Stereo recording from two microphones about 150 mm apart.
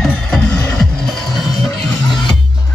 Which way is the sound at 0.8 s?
Centre (ahead or behind).